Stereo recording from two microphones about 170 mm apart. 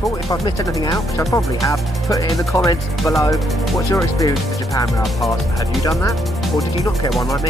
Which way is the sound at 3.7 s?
20° left (ahead or behind).